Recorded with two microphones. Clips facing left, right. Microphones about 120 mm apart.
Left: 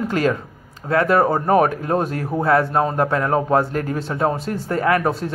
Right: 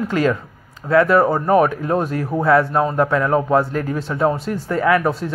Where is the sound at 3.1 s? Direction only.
40° left (ahead or behind).